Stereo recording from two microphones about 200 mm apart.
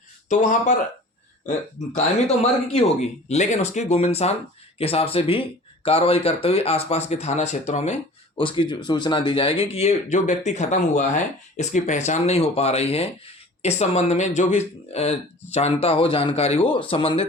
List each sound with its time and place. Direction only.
0.3 s speech: 35° left (ahead or behind)